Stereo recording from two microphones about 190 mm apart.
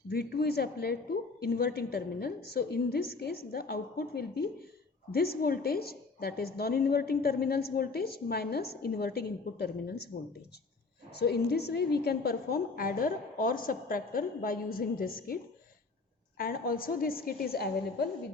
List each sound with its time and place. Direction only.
0.1 s a woman's voice: 55° left (ahead or behind)
11.1 s a woman's voice: 60° left (ahead or behind)
16.4 s a woman's voice: 50° left (ahead or behind)